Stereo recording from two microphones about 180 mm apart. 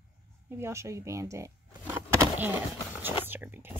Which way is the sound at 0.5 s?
15° right (ahead or behind).